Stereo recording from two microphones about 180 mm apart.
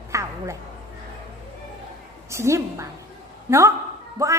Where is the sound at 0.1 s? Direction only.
15° right (ahead or behind).